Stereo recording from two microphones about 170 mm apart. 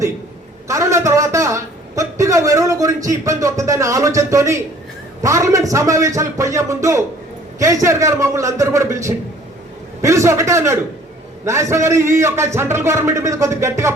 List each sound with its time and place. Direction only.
0.7 s a man's voice: 15° right (ahead or behind)